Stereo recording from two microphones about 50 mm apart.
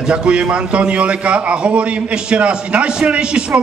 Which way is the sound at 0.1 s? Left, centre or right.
Centre.